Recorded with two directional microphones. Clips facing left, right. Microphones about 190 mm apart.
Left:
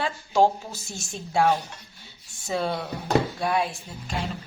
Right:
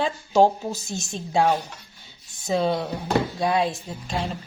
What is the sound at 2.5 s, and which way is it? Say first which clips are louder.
A woman's voice: right 4 dB; 20° right (ahead or behind).